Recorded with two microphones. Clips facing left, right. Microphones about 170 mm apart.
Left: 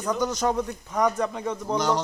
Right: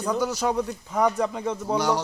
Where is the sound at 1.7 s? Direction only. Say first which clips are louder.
Right 1 dB; 10° right (ahead or behind).